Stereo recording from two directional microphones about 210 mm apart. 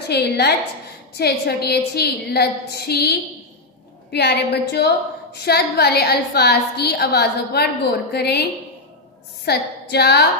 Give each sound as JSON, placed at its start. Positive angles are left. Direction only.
{"t": 0.1, "sound": "a woman's voice", "side_deg": 50}